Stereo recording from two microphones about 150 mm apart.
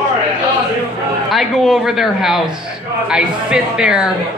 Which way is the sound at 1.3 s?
Centre (ahead or behind).